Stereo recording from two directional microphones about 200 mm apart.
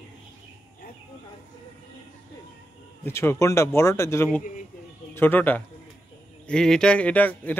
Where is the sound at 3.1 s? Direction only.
15° left (ahead or behind).